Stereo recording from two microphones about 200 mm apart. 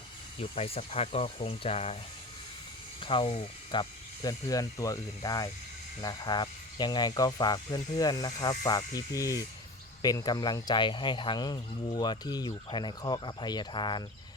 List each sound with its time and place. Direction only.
0.3 s speech: 30° left (ahead or behind)
3.0 s speech: 25° left (ahead or behind)